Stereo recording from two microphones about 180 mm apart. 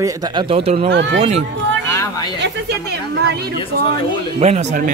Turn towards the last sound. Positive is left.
turn(degrees=-40)  # may be behind; listen again after turning